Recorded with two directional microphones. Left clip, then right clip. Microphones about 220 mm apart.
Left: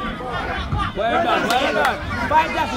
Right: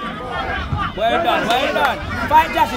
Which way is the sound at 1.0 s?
55° right (ahead or behind).